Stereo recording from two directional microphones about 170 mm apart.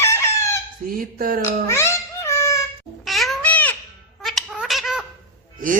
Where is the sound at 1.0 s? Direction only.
55° right (ahead or behind).